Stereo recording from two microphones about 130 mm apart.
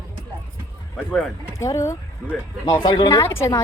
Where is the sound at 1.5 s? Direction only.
25° left (ahead or behind).